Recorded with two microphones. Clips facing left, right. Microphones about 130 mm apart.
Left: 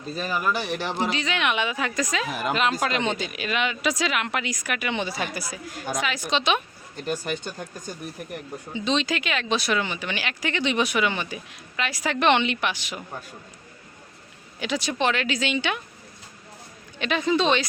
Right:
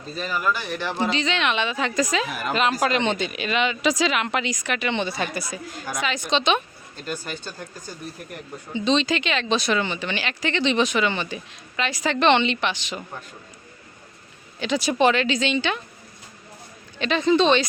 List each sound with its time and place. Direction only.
0.2 s speech: 15° left (ahead or behind)
1.1 s speech: 5° left (ahead or behind)
6.9 s speech: 20° left (ahead or behind)
8.7 s speech: 5° left (ahead or behind)
14.8 s speech: 5° right (ahead or behind); by 15.8 s 10° left (ahead or behind)
17.0 s speech: 10° left (ahead or behind)